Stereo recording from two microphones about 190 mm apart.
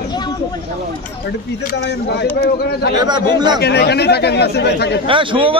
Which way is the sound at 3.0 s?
20° right (ahead or behind).